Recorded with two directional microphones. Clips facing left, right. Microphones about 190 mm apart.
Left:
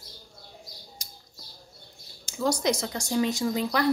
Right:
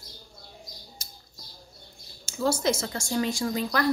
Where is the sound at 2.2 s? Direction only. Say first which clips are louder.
Even; 15° left (ahead or behind).